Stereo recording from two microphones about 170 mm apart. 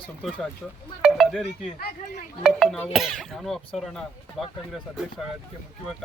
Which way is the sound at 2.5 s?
Centre (ahead or behind).